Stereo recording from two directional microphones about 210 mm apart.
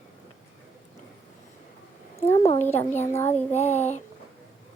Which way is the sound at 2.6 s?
10° left (ahead or behind).